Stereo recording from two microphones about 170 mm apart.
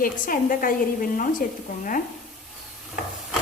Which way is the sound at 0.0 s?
55° left (ahead or behind).